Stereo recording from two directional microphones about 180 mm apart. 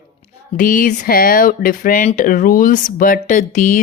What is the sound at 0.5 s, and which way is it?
Speech, 50° left (ahead or behind).